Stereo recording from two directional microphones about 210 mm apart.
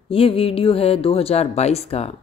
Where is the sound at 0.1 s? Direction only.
25° left (ahead or behind).